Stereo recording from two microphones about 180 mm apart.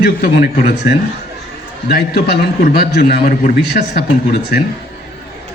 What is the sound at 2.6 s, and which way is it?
A man's voice, 50° left (ahead or behind).